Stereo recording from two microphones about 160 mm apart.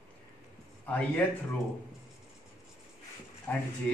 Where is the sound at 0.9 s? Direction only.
10° left (ahead or behind).